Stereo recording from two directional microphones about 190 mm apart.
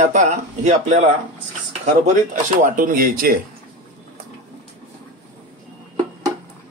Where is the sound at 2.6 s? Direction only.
45° right (ahead or behind).